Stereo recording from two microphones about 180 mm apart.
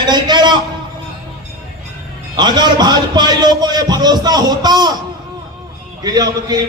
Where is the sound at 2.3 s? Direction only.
25° right (ahead or behind).